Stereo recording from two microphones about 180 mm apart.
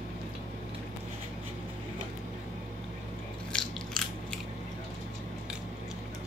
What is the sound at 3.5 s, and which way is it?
Biting, 5° left (ahead or behind).